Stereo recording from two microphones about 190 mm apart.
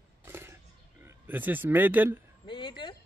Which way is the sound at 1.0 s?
10° right (ahead or behind).